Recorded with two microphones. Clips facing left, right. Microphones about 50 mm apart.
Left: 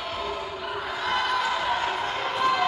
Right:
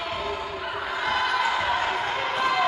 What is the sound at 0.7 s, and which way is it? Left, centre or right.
Crowd, centre.